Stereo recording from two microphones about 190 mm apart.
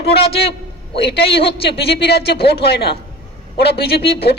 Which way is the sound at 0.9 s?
60° left (ahead or behind).